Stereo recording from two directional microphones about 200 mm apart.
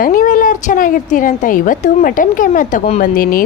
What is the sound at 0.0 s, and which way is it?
A woman's voice, 45° left (ahead or behind).